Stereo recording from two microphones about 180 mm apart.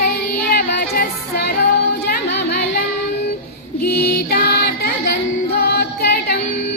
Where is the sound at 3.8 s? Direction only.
60° left (ahead or behind).